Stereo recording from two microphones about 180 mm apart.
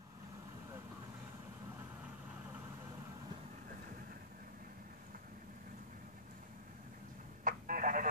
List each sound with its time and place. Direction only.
7.4 s telephone: 50° right (ahead or behind)